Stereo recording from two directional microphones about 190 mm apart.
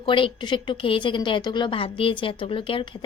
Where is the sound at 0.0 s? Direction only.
25° left (ahead or behind).